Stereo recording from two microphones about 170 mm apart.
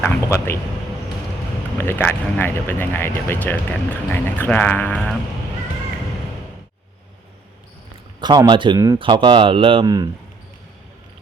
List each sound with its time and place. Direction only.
0.0 s speech: 15° left (ahead or behind)
1.8 s speech: 15° left (ahead or behind)
8.2 s speech: 25° right (ahead or behind)